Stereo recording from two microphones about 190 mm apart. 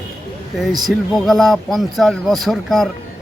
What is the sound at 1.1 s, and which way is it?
A man's voice, centre (ahead or behind).